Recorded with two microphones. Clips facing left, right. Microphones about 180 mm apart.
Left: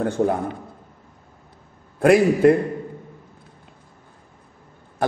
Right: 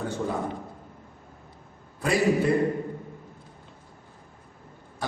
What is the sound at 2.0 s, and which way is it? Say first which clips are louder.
Speech: left 8 dB; 60° left (ahead or behind).